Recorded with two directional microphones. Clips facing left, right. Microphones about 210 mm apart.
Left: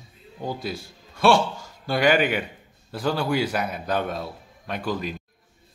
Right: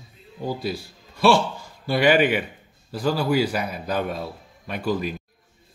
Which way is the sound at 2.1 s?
5° right (ahead or behind).